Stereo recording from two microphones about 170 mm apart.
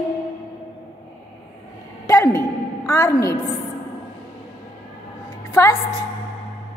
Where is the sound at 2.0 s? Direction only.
15° left (ahead or behind).